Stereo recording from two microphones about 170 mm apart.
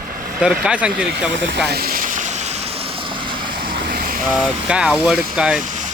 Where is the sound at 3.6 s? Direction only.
60° right (ahead or behind).